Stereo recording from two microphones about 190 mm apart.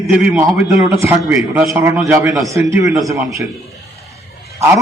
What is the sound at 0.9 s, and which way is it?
Speech, 15° right (ahead or behind).